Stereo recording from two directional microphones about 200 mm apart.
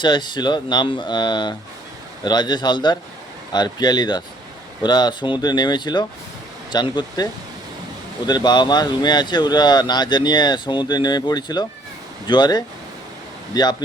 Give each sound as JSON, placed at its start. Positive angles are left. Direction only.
{"t": 0.0, "sound": "speech", "side_deg": 20}
{"t": 8.3, "sound": "speech", "side_deg": 20}